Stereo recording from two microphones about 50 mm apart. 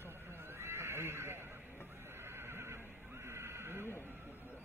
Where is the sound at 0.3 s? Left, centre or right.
Right.